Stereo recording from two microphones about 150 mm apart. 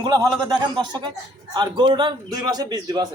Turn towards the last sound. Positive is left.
turn(degrees=-25)  # may be behind; listen again after turning